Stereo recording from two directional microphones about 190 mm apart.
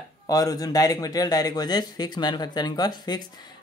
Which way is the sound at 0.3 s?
20° left (ahead or behind).